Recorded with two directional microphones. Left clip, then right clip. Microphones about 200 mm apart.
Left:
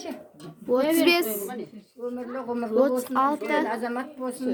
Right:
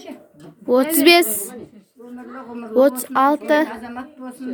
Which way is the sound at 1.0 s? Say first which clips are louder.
Right 9 dB; 25° right (ahead or behind).